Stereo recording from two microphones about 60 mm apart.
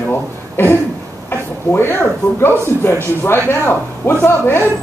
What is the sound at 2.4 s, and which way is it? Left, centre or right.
Speech, left.